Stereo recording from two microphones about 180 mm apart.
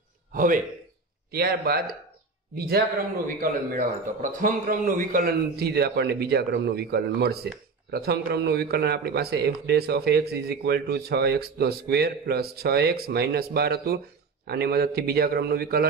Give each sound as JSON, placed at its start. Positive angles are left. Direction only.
{"t": 0.3, "sound": "a man's voice", "side_deg": -50}
{"t": 1.3, "sound": "speech", "side_deg": -60}
{"t": 3.3, "sound": "speech", "side_deg": -50}